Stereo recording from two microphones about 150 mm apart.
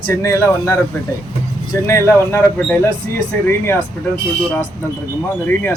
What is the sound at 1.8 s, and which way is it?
A man's voice, 15° left (ahead or behind).